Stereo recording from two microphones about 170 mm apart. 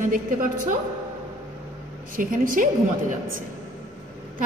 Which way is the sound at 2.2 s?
55° right (ahead or behind).